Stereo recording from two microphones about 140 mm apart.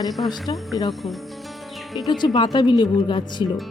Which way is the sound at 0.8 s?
30° left (ahead or behind).